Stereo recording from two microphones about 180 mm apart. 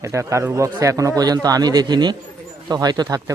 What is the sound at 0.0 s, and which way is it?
Speech, 15° right (ahead or behind).